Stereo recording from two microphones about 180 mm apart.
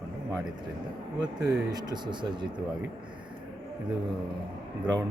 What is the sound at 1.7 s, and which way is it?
Speech, 25° right (ahead or behind).